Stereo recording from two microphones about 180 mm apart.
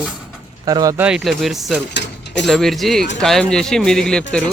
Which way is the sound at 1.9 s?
75° left (ahead or behind).